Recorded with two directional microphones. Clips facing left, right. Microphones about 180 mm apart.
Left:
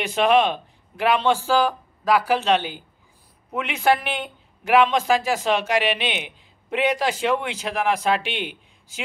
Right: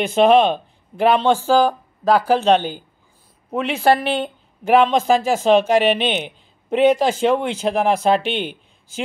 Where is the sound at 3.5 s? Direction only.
30° right (ahead or behind).